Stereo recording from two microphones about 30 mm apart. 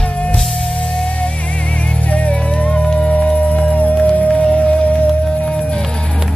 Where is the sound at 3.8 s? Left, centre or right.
Left.